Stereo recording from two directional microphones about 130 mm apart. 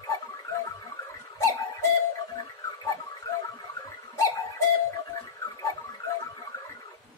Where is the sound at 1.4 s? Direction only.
25° left (ahead or behind).